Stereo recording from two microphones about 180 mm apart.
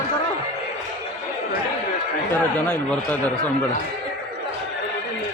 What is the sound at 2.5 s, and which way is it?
Speech, 5° left (ahead or behind).